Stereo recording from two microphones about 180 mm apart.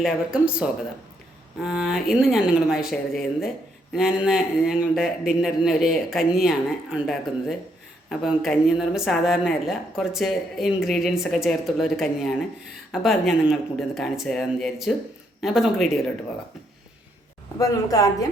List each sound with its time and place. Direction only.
0.0 s a man's voice: 5° right (ahead or behind)
17.6 s speech: 20° left (ahead or behind)